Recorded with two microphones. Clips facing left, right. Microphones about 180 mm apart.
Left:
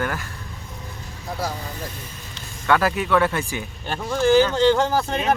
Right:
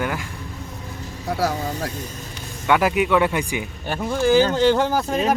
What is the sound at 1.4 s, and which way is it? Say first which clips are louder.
Speech: right 6 dB; 80° right.